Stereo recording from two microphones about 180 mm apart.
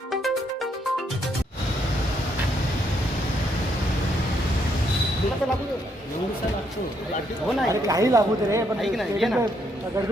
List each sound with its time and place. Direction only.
7.7 s speech: 20° right (ahead or behind)
8.8 s speech: centre (ahead or behind)